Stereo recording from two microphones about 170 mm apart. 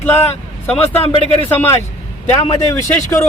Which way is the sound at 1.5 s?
15° left (ahead or behind).